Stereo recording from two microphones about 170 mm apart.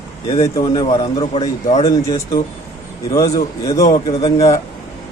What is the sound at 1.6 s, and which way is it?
Speech, 35° left (ahead or behind).